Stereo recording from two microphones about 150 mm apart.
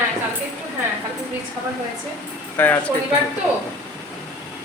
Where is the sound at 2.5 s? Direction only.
10° left (ahead or behind).